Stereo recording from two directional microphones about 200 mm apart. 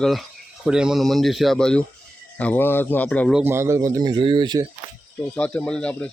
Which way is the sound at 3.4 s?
10° right (ahead or behind).